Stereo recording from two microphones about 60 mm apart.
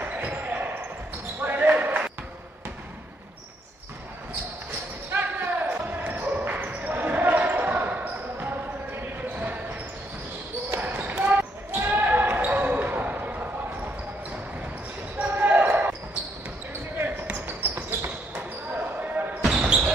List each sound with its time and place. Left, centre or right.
0.0 s basketball bounce: right
5.1 s basketball bounce: right
10.7 s basketball bounce: right
15.1 s basketball bounce: right
19.5 s basketball bounce: centre